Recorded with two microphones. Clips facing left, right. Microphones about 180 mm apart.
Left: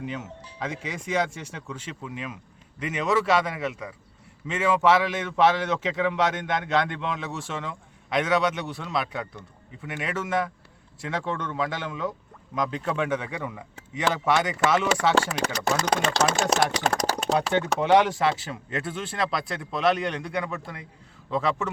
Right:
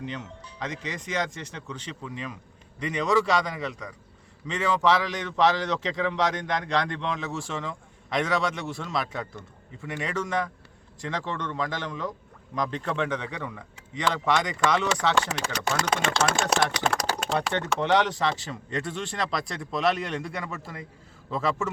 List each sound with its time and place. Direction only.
0.0 s speech: 10° left (ahead or behind)
15.4 s speech: 40° left (ahead or behind)
16.8 s typing: 40° left (ahead or behind)
17.7 s a man's voice: 10° left (ahead or behind)